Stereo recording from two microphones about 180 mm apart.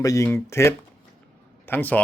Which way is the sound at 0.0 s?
15° left (ahead or behind).